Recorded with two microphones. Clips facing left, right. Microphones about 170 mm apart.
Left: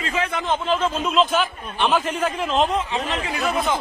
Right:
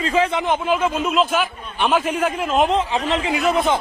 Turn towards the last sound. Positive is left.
turn(degrees=-25)  # may be behind; listen again after turning